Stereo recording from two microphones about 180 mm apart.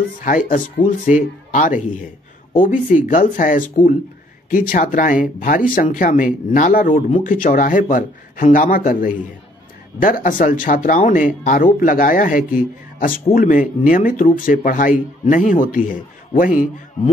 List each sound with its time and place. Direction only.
0.2 s speech: 50° left (ahead or behind)